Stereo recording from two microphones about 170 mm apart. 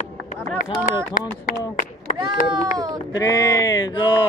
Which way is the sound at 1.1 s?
50° left (ahead or behind).